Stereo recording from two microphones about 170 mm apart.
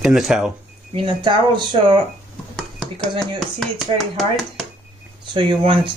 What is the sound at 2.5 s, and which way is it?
Dishes, 5° left (ahead or behind).